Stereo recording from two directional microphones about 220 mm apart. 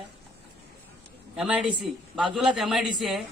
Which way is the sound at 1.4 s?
5° right (ahead or behind).